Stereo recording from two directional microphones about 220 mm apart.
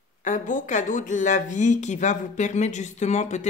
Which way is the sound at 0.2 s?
35° left (ahead or behind).